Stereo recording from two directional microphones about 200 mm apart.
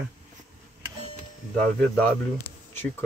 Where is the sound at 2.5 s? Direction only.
10° left (ahead or behind).